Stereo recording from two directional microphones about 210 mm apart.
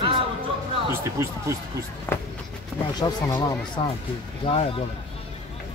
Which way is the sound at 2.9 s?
20° left (ahead or behind).